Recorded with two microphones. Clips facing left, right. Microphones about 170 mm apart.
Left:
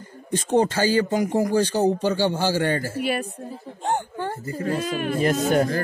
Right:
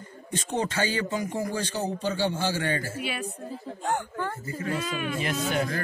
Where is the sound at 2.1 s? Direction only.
40° left (ahead or behind).